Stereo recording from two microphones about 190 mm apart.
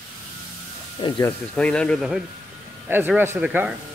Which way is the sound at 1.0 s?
25° left (ahead or behind).